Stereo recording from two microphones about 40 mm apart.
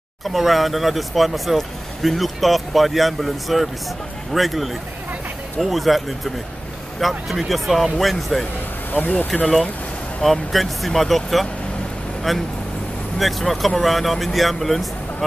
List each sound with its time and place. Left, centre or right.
0.3 s speech: centre
8.9 s speech: left
10.2 s speech: centre